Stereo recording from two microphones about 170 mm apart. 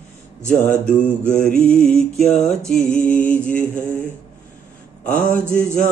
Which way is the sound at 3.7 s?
15° right (ahead or behind).